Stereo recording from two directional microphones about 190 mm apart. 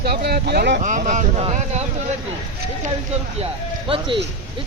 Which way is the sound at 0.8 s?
40° right (ahead or behind).